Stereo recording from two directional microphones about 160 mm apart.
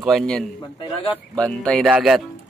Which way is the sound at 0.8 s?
30° left (ahead or behind).